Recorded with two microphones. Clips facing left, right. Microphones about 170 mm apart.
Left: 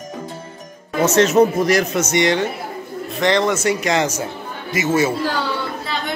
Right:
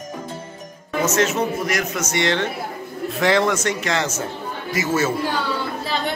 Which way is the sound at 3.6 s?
10° left (ahead or behind).